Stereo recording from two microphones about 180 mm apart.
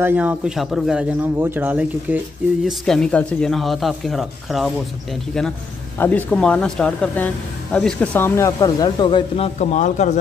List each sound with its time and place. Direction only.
0.0 s speech: 10° right (ahead or behind)
2.8 s speech: 5° left (ahead or behind)
5.9 s speech: 10° left (ahead or behind); by 9.5 s 25° left (ahead or behind)
9.6 s speech: 40° left (ahead or behind)